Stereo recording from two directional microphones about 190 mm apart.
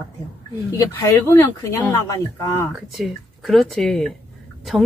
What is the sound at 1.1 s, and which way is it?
Speech, 15° left (ahead or behind).